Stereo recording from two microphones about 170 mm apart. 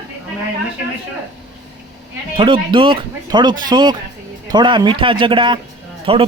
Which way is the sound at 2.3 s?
30° right (ahead or behind).